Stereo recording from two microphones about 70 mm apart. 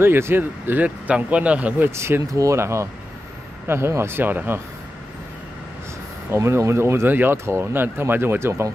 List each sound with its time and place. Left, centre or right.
0.0 s speech: right
1.9 s speech: right
6.3 s speech: right